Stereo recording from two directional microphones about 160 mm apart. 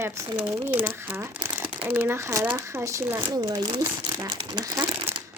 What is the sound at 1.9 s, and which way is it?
Speech, 10° right (ahead or behind).